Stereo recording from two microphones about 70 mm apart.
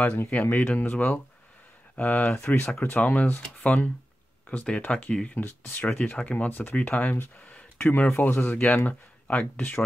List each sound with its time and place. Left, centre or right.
0.0 s speech: left
3.0 s speech: left
5.4 s speech: left
7.3 s a sound: left
8.2 s speech: left